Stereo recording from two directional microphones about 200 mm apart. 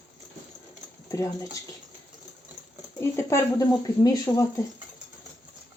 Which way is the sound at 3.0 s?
15° left (ahead or behind).